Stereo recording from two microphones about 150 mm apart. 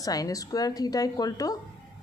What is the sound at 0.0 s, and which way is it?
A woman's voice, 25° left (ahead or behind).